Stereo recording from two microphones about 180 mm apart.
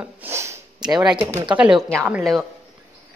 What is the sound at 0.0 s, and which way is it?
Snort, 10° right (ahead or behind).